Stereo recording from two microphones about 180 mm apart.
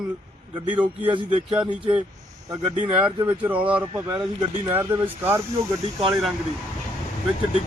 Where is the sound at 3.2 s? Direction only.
10° right (ahead or behind).